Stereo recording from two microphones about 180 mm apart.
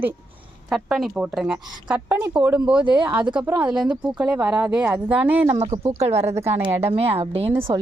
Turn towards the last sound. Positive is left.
turn(degrees=-25)  # may be behind; listen again after turning